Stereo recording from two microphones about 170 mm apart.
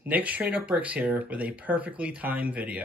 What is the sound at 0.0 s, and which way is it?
Speech, 10° right (ahead or behind).